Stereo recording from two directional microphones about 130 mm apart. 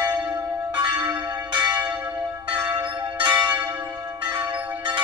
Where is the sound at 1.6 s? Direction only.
10° right (ahead or behind).